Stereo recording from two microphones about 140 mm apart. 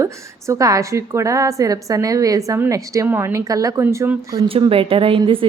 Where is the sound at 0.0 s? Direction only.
20° right (ahead or behind).